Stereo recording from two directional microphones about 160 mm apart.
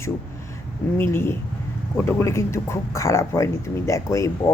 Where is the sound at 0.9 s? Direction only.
15° left (ahead or behind).